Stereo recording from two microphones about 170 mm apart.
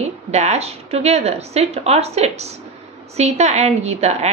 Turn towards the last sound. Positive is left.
turn(degrees=-40)  # may be behind; listen again after turning